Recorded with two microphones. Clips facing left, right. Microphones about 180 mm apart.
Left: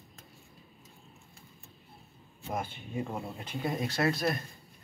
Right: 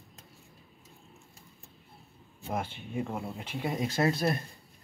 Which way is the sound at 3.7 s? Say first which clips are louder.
Right 2 dB; 20° right (ahead or behind).